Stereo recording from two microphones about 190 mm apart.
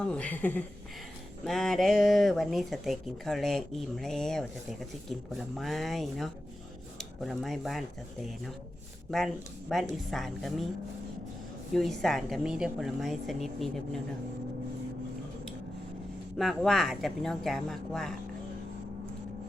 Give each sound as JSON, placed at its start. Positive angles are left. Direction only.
{"t": 0.0, "sound": "speech", "side_deg": 5}
{"t": 11.7, "sound": "speech", "side_deg": 0}
{"t": 16.4, "sound": "speech", "side_deg": 0}